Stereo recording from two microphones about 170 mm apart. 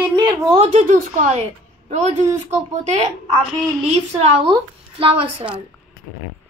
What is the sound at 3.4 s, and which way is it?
Child singing, 5° right (ahead or behind).